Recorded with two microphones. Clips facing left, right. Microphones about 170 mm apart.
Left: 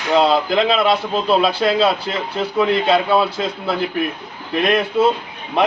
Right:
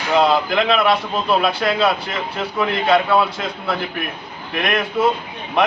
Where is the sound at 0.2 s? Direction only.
30° left (ahead or behind).